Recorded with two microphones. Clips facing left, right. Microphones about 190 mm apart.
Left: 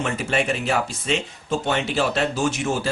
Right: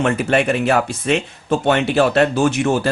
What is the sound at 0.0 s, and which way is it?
Speech, 60° right (ahead or behind).